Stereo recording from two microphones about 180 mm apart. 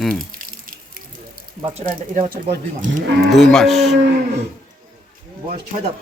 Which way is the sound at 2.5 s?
65° right (ahead or behind).